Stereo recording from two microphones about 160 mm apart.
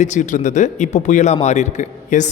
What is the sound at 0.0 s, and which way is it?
A man's voice, 50° left (ahead or behind).